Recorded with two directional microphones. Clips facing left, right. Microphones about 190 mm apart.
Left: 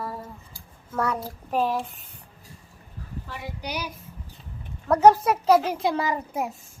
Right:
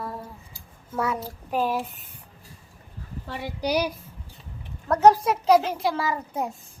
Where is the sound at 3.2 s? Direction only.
30° right (ahead or behind).